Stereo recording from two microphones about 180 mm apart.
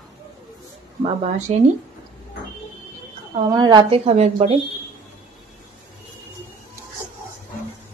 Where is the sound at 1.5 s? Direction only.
35° right (ahead or behind).